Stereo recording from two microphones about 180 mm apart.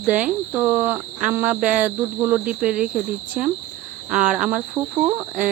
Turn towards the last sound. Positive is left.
turn(degrees=-10)  # may be behind; listen again after turning